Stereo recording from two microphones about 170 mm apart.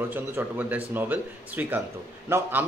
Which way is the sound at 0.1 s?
10° right (ahead or behind).